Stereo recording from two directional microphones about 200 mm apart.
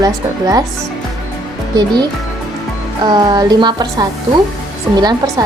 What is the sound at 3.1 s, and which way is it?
Speech, 20° right (ahead or behind).